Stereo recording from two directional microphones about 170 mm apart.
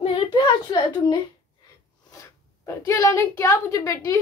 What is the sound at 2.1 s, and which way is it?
Speech, 20° left (ahead or behind).